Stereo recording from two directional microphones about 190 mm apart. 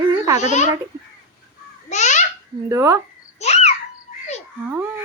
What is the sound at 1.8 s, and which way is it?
Babbling, 40° left (ahead or behind).